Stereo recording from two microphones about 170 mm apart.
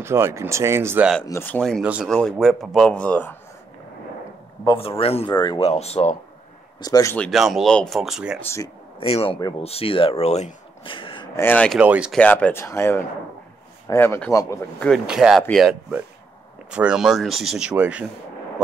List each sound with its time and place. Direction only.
0.0 s speech: 15° right (ahead or behind)
1.2 s speech: 15° left (ahead or behind)
4.6 s speech: 35° left (ahead or behind)
5.3 s speech: 25° left (ahead or behind)
5.6 s speech: 35° left (ahead or behind)
6.8 s speech: 20° left (ahead or behind)
7.2 s speech: centre (ahead or behind)
9.0 s speech: 35° left (ahead or behind)
11.3 s speech: 10° left (ahead or behind)
11.8 s speech: 5° right (ahead or behind)
12.2 s speech: 10° left (ahead or behind)
14.9 s speech: 5° right (ahead or behind)